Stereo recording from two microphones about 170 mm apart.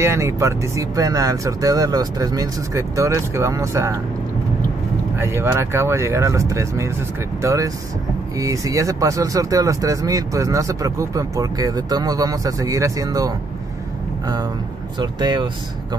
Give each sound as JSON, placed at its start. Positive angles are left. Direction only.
{"t": 0.0, "sound": "speech", "side_deg": -15}
{"t": 5.1, "sound": "speech", "side_deg": -15}